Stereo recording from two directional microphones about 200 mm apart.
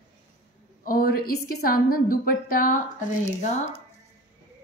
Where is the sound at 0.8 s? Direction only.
45° left (ahead or behind).